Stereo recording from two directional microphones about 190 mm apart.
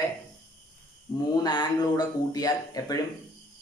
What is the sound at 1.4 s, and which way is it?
Speech, 20° left (ahead or behind).